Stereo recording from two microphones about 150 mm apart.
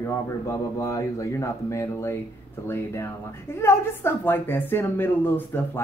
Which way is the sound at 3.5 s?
15° left (ahead or behind).